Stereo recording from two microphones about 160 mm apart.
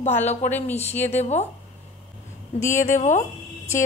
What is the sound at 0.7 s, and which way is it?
Speech, 10° left (ahead or behind).